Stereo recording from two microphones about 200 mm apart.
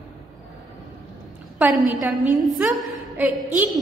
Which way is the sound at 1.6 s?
10° right (ahead or behind).